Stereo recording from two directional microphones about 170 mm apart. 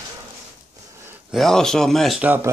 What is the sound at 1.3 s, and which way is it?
Speech, centre (ahead or behind).